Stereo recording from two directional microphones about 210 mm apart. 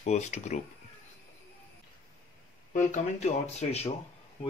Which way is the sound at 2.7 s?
35° left (ahead or behind).